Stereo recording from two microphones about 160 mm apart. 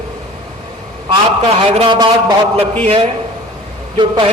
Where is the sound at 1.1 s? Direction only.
40° right (ahead or behind).